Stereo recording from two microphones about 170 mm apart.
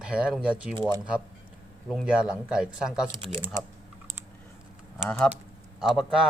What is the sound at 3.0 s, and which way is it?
Speech, 25° right (ahead or behind).